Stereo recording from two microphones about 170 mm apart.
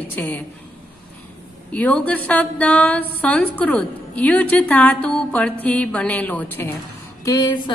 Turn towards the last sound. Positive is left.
turn(degrees=25)  # may be behind; listen again after turning